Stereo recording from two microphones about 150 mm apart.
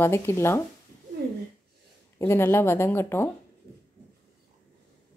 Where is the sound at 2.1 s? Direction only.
15° left (ahead or behind).